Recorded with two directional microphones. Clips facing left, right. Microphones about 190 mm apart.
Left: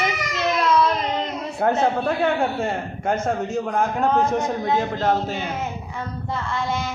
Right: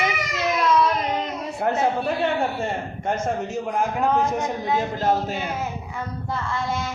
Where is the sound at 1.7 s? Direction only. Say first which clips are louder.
Even; 10° right (ahead or behind).